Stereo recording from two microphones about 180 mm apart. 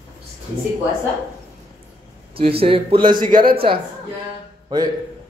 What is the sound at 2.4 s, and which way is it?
Speech, 30° right (ahead or behind).